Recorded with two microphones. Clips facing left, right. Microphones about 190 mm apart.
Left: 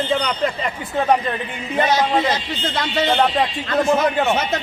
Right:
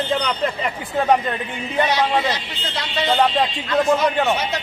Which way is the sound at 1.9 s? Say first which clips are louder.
Left 4 dB; 45° left (ahead or behind).